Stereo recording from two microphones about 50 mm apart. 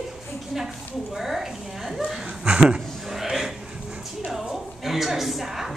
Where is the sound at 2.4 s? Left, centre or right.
Centre.